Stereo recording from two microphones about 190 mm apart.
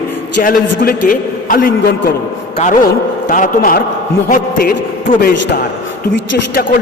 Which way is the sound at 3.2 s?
45° left (ahead or behind).